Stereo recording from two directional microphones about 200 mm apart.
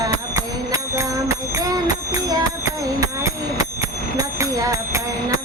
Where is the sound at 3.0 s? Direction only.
15° right (ahead or behind).